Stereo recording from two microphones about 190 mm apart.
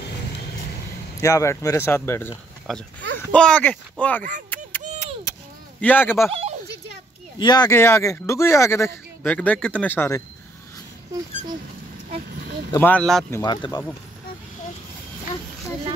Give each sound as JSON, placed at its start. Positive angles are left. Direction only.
{"t": 1.2, "sound": "speech", "side_deg": 15}
{"t": 2.7, "sound": "speech", "side_deg": 0}
{"t": 4.5, "sound": "a sound", "side_deg": 10}
{"t": 5.8, "sound": "speech", "side_deg": 10}
{"t": 7.3, "sound": "speech", "side_deg": 20}
{"t": 12.7, "sound": "speech", "side_deg": 10}
{"t": 13.3, "sound": "speech", "side_deg": 20}